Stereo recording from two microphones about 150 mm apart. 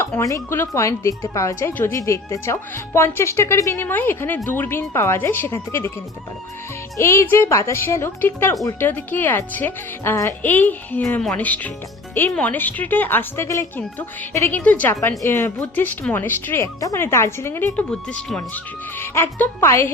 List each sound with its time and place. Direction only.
0.0 s speech: 20° left (ahead or behind)
6.9 s speech: 20° left (ahead or behind)